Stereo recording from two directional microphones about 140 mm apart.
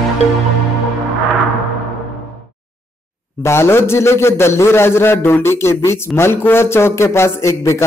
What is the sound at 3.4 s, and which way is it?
A man's voice, 15° left (ahead or behind).